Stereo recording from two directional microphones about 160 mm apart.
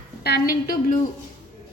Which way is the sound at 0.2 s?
75° left (ahead or behind).